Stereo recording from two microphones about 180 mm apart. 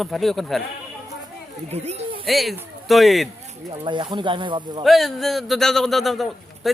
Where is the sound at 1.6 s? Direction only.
35° right (ahead or behind).